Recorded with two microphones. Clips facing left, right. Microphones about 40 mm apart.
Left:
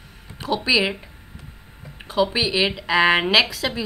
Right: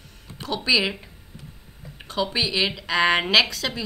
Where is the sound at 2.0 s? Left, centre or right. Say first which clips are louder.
Left 4 dB; centre.